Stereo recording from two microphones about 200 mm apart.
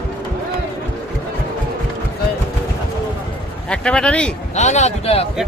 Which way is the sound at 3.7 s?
5° left (ahead or behind).